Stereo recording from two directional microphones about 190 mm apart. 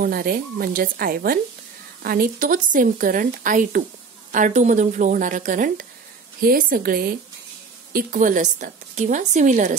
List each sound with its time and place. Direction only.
0.0 s a woman's voice: 50° right (ahead or behind)